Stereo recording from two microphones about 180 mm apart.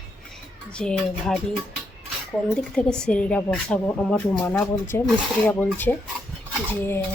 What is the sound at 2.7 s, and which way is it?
Speech, 5° left (ahead or behind).